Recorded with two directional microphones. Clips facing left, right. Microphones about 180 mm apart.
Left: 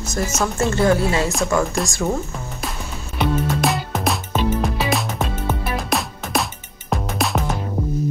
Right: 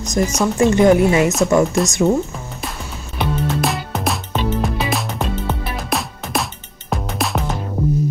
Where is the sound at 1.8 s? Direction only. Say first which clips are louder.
Right 5 dB; centre (ahead or behind).